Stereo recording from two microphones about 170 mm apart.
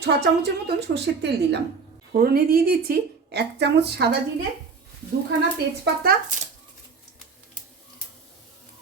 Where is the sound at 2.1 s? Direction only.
60° right (ahead or behind); by 4.0 s 80° right.